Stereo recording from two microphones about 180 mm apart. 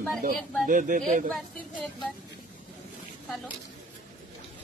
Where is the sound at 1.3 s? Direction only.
Centre (ahead or behind).